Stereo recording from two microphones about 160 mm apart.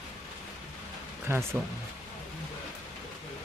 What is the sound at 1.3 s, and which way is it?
Speech, 15° right (ahead or behind).